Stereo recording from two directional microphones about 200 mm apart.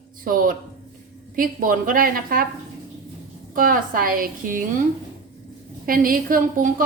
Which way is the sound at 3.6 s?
45° right (ahead or behind).